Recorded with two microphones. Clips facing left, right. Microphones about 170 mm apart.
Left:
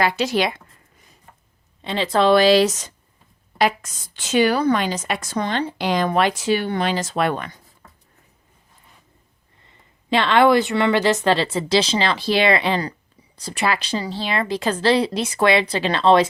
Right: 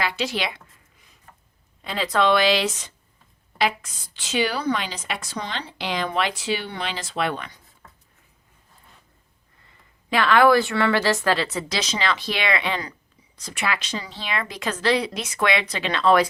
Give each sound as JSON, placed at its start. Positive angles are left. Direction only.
{"t": 0.0, "sound": "a woman's voice", "side_deg": 45}
{"t": 1.8, "sound": "a woman's voice", "side_deg": 25}
{"t": 10.1, "sound": "speech", "side_deg": 25}